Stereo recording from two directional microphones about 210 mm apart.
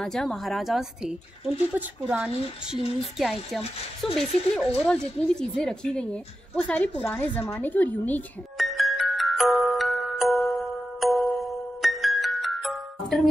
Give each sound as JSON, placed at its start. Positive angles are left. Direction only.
{"t": 0.0, "sound": "speech", "side_deg": 0}
{"t": 6.5, "sound": "a sound", "side_deg": 5}
{"t": 11.8, "sound": "music", "side_deg": 0}